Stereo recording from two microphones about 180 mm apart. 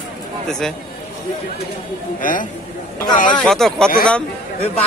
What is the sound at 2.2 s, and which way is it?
Speech, 50° left (ahead or behind).